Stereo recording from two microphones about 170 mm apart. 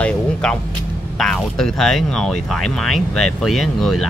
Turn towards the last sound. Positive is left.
turn(degrees=0)  # may be behind; listen again after turning